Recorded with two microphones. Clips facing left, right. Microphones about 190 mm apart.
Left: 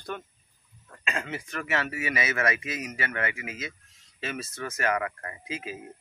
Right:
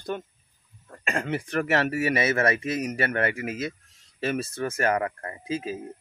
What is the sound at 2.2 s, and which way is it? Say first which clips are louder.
Speech: right 2 dB; 35° right (ahead or behind).